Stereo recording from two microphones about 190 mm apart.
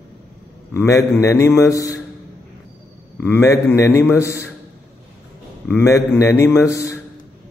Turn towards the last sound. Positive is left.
turn(degrees=15)  # may be behind; listen again after turning